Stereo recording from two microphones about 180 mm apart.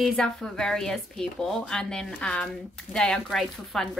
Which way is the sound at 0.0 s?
5° left (ahead or behind).